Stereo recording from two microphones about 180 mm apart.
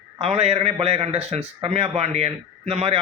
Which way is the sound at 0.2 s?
35° right (ahead or behind).